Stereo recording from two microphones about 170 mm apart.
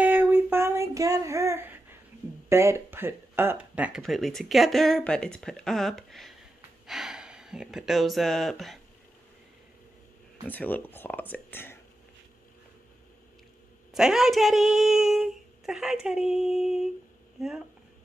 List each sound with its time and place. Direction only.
0.0 s child singing: 10° right (ahead or behind)
2.5 s speech: 15° right (ahead or behind); by 8.7 s centre (ahead or behind)
10.4 s speech: 10° left (ahead or behind)
13.9 s speech: 5° right (ahead or behind)